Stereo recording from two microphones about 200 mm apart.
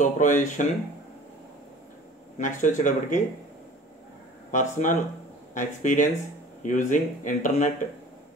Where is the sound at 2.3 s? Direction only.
40° left (ahead or behind).